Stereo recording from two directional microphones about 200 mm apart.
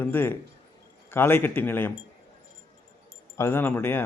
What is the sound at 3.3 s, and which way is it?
Speech, 10° left (ahead or behind).